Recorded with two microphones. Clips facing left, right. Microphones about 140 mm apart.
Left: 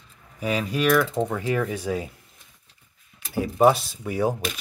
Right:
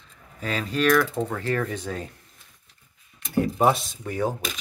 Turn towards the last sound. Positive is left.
turn(degrees=10)  # may be behind; listen again after turning